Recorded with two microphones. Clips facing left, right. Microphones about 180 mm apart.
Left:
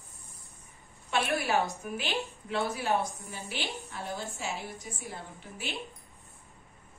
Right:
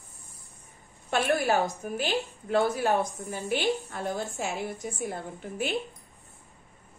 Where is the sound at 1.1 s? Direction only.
40° right (ahead or behind).